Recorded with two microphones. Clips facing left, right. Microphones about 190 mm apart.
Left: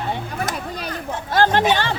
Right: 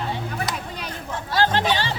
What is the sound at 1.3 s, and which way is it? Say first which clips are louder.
Music: left 4 dB; 50° left (ahead or behind).